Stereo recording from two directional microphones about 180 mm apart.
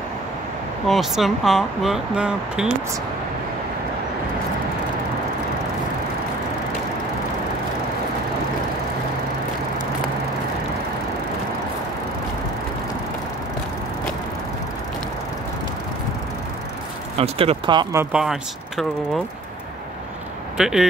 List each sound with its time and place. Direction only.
0.8 s speech: centre (ahead or behind)
17.2 s speech: 30° right (ahead or behind)
17.9 s speech: 5° right (ahead or behind)
20.5 s speech: 5° right (ahead or behind)